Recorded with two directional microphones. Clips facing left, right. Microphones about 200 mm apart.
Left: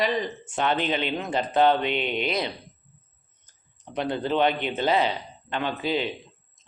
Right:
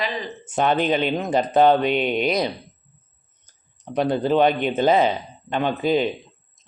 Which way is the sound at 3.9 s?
40° right (ahead or behind).